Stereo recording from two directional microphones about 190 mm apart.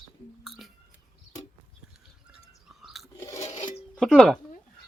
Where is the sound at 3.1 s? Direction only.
15° left (ahead or behind).